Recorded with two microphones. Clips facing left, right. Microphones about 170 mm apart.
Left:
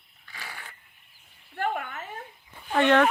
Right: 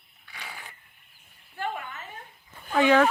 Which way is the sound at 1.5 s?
60° left (ahead or behind).